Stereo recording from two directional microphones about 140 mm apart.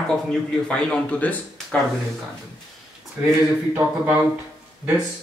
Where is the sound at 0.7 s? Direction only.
5° left (ahead or behind).